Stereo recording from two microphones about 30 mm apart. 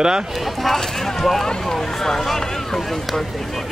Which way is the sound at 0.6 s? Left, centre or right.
Centre.